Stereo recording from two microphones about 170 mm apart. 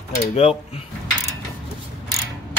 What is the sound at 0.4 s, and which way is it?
Speech, 35° left (ahead or behind).